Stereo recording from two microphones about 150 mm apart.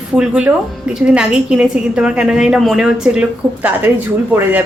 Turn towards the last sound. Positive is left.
turn(degrees=-10)  # may be behind; listen again after turning